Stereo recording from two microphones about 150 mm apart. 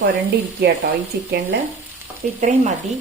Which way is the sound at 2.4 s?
50° right (ahead or behind).